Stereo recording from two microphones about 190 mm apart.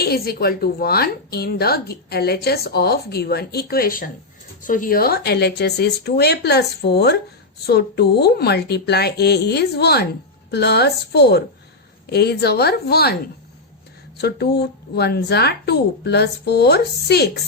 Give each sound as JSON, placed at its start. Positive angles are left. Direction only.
{"t": 0.0, "sound": "a woman's voice", "side_deg": 55}
{"t": 14.2, "sound": "a woman's voice", "side_deg": 60}